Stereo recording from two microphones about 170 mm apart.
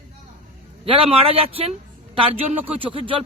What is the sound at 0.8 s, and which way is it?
A man's voice, 35° right (ahead or behind).